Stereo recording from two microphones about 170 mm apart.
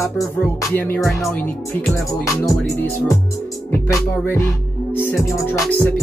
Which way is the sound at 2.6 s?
5° left (ahead or behind).